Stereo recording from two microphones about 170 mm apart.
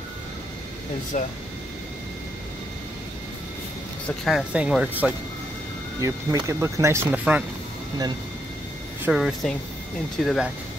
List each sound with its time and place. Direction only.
1.1 s speech: 45° left (ahead or behind)
4.2 s speech: centre (ahead or behind)
9.0 s speech: centre (ahead or behind)